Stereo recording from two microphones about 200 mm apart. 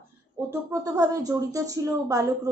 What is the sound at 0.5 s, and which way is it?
Speech, 15° right (ahead or behind).